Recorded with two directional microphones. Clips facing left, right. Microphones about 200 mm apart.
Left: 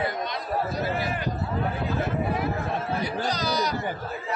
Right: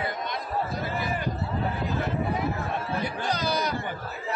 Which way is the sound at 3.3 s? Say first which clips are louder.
Right 1 dB; 55° right (ahead or behind).